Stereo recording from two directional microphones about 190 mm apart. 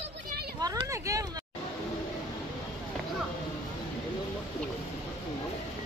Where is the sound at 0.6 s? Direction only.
20° right (ahead or behind).